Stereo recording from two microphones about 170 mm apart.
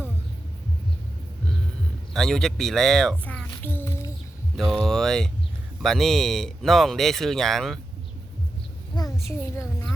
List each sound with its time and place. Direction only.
2.1 s speech: 5° left (ahead or behind)
4.5 s speech: centre (ahead or behind)
9.2 s a child's voice: 15° left (ahead or behind)